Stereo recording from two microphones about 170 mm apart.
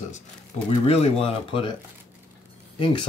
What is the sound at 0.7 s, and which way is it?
Speech, 35° left (ahead or behind).